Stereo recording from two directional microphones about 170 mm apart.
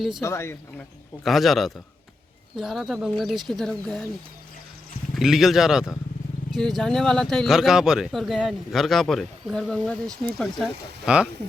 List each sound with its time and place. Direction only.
0.2 s speech: 15° left (ahead or behind)
1.2 s speech: centre (ahead or behind)
5.1 s speech: centre (ahead or behind)